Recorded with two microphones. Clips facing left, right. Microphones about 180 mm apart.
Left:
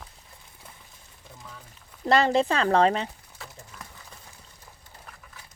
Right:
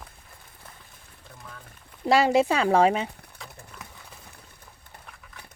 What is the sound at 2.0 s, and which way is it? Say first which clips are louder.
Speech: right 1 dB; 10° right (ahead or behind).